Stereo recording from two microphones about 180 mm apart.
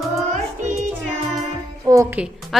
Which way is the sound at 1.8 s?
15° right (ahead or behind).